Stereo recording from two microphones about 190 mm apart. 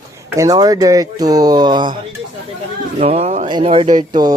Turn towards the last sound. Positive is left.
turn(degrees=-20)  # may be behind; listen again after turning